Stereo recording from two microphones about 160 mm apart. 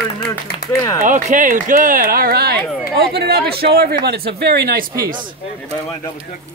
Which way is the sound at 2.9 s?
90° right.